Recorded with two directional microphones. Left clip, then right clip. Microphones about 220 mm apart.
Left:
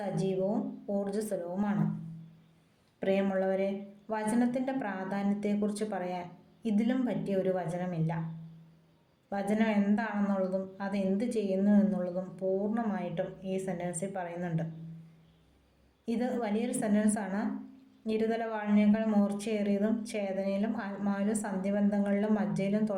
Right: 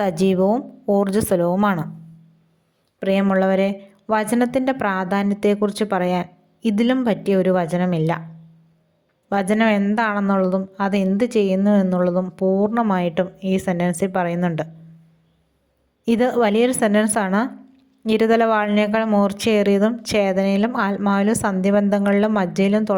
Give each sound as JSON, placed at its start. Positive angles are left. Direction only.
{"t": 0.0, "sound": "speech", "side_deg": -45}
{"t": 3.0, "sound": "speech", "side_deg": -45}
{"t": 9.3, "sound": "speech", "side_deg": -45}
{"t": 16.0, "sound": "speech", "side_deg": -45}